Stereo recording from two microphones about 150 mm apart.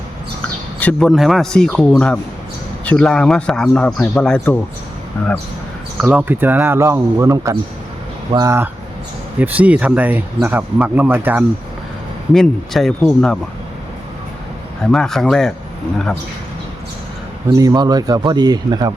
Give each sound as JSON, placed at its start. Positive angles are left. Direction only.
{"t": 0.8, "sound": "speech", "side_deg": 5}
{"t": 6.0, "sound": "a man's voice", "side_deg": -10}
{"t": 12.3, "sound": "speech", "side_deg": 0}
{"t": 14.8, "sound": "speech", "side_deg": 5}
{"t": 17.5, "sound": "a man's voice", "side_deg": -20}